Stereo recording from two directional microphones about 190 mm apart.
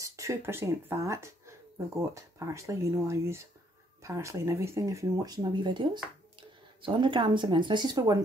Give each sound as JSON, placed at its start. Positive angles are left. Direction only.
{"t": 0.0, "sound": "speech", "side_deg": -15}